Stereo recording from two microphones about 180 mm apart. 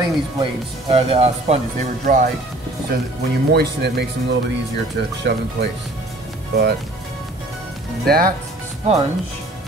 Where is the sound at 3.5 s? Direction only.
65° right (ahead or behind).